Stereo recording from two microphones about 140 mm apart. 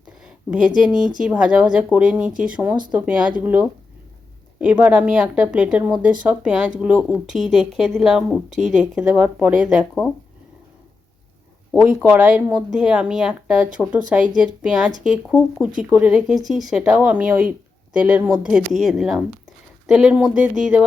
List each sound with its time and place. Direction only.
0.2 s a sound: 5° right (ahead or behind)
0.9 s speech: 70° right (ahead or behind)
1.2 s speech: 5° right (ahead or behind)
12.0 s speech: 10° right (ahead or behind)